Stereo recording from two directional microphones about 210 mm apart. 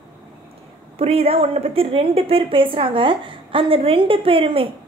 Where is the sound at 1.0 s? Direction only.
30° right (ahead or behind).